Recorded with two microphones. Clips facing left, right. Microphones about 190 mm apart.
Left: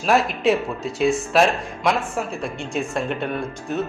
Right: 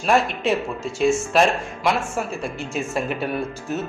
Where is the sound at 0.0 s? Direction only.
Centre (ahead or behind).